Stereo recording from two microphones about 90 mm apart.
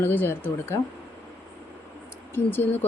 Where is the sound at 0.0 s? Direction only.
25° left (ahead or behind).